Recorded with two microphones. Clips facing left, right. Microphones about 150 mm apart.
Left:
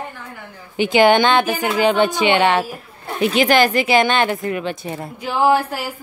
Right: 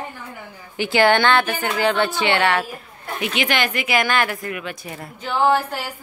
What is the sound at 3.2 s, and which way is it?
A woman's voice, 35° left (ahead or behind).